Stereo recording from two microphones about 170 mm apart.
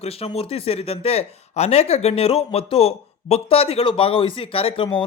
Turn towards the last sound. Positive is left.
turn(degrees=30)  # may be behind; listen again after turning